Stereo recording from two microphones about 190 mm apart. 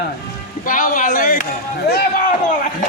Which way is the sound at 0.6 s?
45° left (ahead or behind).